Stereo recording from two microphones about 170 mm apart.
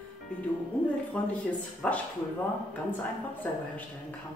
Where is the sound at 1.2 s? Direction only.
5° left (ahead or behind).